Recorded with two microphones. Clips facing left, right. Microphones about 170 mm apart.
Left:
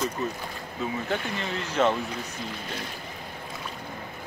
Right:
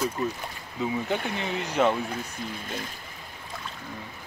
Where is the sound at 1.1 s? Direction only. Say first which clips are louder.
Right 1 dB; 15° right (ahead or behind).